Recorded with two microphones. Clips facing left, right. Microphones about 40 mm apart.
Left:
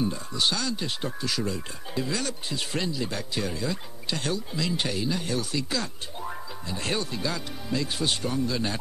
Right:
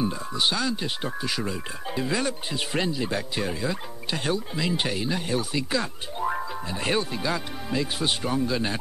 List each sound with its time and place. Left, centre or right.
0.0 s speech: centre